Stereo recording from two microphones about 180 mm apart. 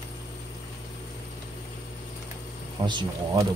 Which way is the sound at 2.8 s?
25° right (ahead or behind).